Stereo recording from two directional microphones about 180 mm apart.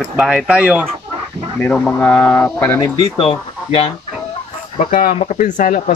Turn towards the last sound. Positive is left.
turn(degrees=45)  # may be behind; listen again after turning